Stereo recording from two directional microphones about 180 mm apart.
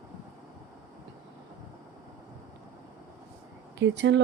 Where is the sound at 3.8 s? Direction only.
80° right.